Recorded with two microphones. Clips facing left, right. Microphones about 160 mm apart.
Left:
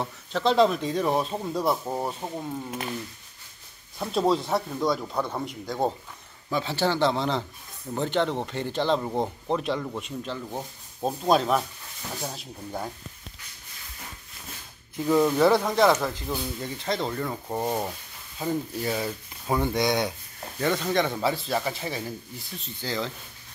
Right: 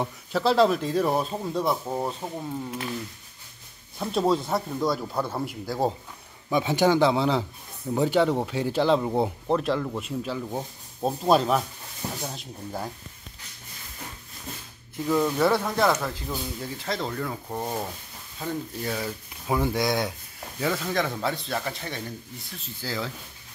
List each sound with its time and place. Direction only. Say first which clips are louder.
0.0 s speech: right 1 dB; 5° right (ahead or behind)
4.0 s speech: even; centre (ahead or behind)
6.5 s speech: right 5 dB; 15° right (ahead or behind); by 12.9 s centre (ahead or behind)
15.0 s speech: left 2 dB; 15° left (ahead or behind)
15.3 s speech: left 3 dB; centre (ahead or behind)